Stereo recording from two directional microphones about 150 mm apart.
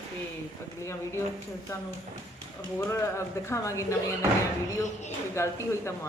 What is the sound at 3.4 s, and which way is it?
Speech, 20° left (ahead or behind).